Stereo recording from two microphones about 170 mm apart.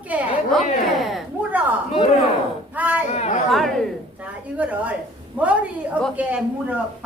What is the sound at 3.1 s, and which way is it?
Chatter, 40° left (ahead or behind).